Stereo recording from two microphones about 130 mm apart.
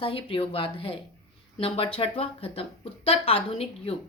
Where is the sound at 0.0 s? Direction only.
45° left (ahead or behind).